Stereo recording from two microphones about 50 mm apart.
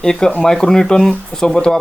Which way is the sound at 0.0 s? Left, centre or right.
Centre.